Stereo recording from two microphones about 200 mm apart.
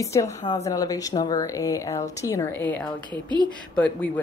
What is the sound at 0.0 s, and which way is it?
Speech, 15° left (ahead or behind).